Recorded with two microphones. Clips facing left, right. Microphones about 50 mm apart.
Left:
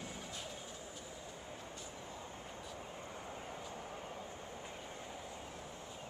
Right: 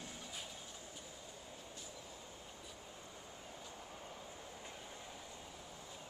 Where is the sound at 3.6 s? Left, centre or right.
Left.